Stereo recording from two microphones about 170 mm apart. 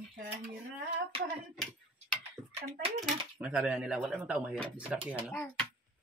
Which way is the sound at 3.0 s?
5° right (ahead or behind).